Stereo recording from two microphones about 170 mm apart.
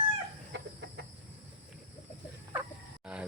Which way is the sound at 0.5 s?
90° right.